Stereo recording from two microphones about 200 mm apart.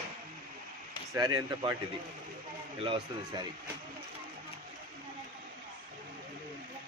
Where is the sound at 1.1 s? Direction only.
20° right (ahead or behind).